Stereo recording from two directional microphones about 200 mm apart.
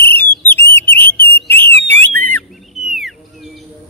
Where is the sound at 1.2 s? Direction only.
10° left (ahead or behind).